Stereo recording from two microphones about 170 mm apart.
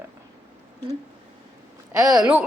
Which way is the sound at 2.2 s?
10° right (ahead or behind).